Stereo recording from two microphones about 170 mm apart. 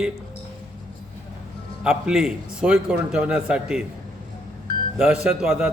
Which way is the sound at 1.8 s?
5° right (ahead or behind).